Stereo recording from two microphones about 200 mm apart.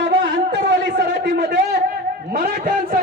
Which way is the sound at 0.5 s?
55° right (ahead or behind).